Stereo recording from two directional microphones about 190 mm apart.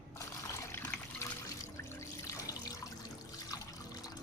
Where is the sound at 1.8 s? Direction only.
15° left (ahead or behind).